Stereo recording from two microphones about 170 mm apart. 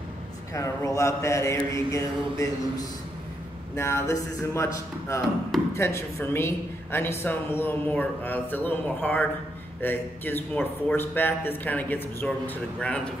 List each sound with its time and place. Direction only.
0.5 s a woman's voice: 20° left (ahead or behind)